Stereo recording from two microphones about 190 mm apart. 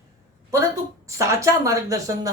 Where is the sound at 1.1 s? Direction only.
15° right (ahead or behind).